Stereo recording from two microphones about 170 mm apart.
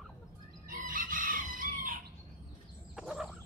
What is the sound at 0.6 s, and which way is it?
Chicken, 50° right (ahead or behind).